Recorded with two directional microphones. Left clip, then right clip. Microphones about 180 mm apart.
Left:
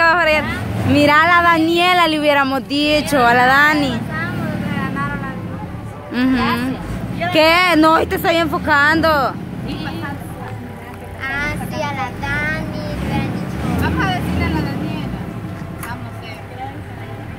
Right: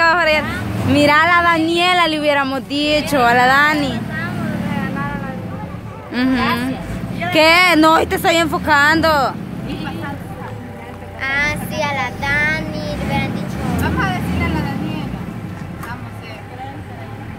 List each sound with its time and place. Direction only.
0.0 s speech: centre (ahead or behind)
6.1 s speech: centre (ahead or behind)
11.1 s vehicle: 35° right (ahead or behind)
13.7 s vehicle: centre (ahead or behind)